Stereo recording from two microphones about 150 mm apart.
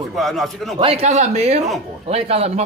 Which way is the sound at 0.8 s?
40° right (ahead or behind).